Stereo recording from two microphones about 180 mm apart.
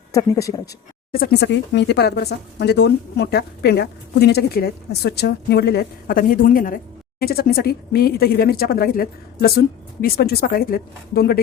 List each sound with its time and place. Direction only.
0.1 s speech: 20° left (ahead or behind)
1.1 s speech: 60° left (ahead or behind)